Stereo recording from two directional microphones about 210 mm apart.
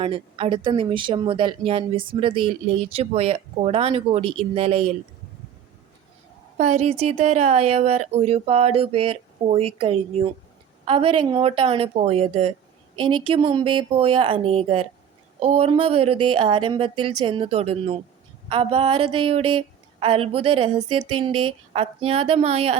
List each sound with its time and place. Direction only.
0.0 s speech: 25° right (ahead or behind)
6.6 s speech: 30° right (ahead or behind)